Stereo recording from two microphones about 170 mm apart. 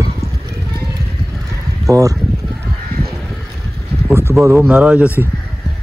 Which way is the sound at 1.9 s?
20° right (ahead or behind).